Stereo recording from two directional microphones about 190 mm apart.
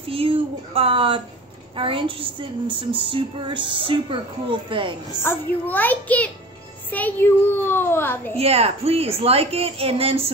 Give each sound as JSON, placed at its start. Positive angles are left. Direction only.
{"t": 0.1, "sound": "speech", "side_deg": -30}
{"t": 5.2, "sound": "a child's voice", "side_deg": 10}
{"t": 8.4, "sound": "a woman's voice", "side_deg": -30}